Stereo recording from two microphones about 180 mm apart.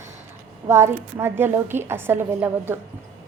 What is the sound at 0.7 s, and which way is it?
A woman's voice, 15° right (ahead or behind).